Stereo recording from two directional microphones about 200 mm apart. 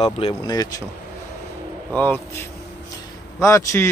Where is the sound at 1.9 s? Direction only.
10° left (ahead or behind).